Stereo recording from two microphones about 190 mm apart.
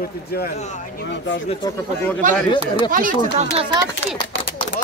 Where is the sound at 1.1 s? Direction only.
70° left (ahead or behind).